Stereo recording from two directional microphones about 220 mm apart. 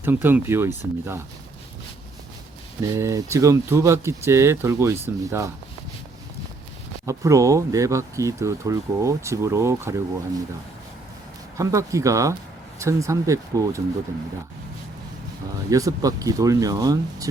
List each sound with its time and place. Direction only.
0.0 s speech: 10° right (ahead or behind)
2.9 s speech: 15° right (ahead or behind)
7.0 s speech: 15° right (ahead or behind)
11.5 s speech: 15° right (ahead or behind)
15.7 s speech: 15° right (ahead or behind)